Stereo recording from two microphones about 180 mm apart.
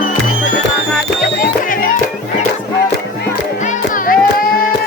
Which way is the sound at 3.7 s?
50° left (ahead or behind).